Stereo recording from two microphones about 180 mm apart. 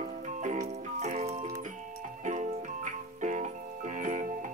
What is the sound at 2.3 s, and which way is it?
Music, 45° right (ahead or behind).